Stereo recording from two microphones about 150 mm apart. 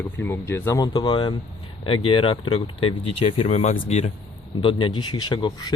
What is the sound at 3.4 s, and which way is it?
Speech, 50° left (ahead or behind).